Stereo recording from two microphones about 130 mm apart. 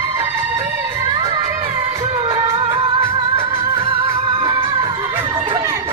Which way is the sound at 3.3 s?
45° right (ahead or behind).